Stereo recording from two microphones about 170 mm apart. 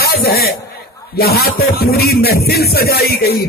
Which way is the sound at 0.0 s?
65° left (ahead or behind).